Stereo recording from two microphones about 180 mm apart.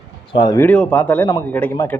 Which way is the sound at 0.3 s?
20° left (ahead or behind).